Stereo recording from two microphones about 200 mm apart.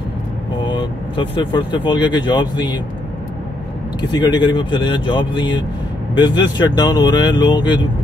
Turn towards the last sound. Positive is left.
turn(degrees=20)  # may be behind; listen again after turning